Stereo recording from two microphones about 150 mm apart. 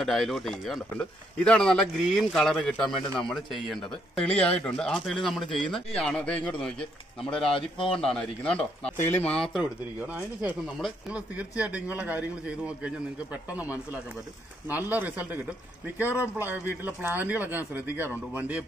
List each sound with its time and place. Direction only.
0.0 s speech: centre (ahead or behind)
7.4 s a man's voice: 35° left (ahead or behind)
8.0 s speech: 5° left (ahead or behind); by 15.2 s 10° right (ahead or behind)
16.3 s speech: 15° right (ahead or behind)